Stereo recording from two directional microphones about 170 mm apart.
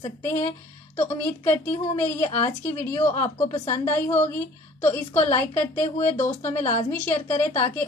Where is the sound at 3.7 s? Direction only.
15° left (ahead or behind).